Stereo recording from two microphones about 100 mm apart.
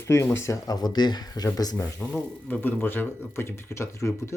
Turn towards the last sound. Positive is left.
turn(degrees=30)  # may be behind; listen again after turning